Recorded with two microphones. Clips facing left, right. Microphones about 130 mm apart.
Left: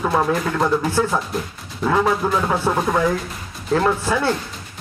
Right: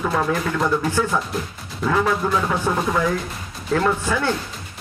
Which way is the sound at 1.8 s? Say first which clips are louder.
Left 2 dB; 30° left (ahead or behind).